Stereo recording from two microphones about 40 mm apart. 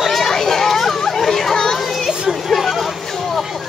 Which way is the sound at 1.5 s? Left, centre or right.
Centre.